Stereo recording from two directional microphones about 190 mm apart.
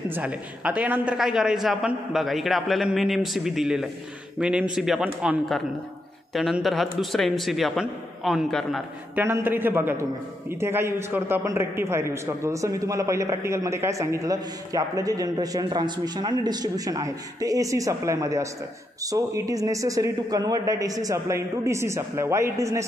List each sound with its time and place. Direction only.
0.1 s a man's voice: 5° right (ahead or behind)
9.1 s a man's voice: 10° right (ahead or behind)